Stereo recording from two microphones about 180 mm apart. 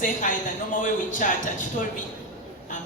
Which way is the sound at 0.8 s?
45° left (ahead or behind).